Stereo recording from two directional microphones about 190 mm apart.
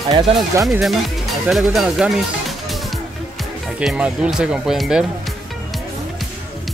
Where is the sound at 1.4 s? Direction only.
Centre (ahead or behind).